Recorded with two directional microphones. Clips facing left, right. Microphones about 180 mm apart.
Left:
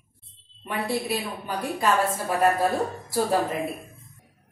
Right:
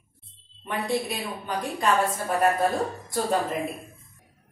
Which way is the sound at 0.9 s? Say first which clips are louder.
Even; 5° left (ahead or behind).